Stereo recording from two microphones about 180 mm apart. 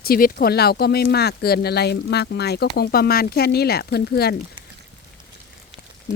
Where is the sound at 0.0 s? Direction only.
55° left (ahead or behind).